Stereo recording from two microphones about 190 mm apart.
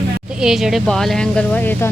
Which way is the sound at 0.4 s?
Centre (ahead or behind).